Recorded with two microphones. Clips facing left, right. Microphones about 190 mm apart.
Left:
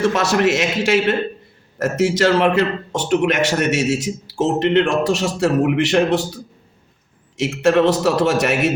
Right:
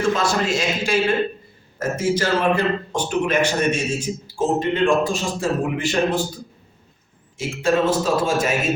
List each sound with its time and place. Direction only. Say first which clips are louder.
0.1 s a man's voice: left 4 dB; 75° left (ahead or behind)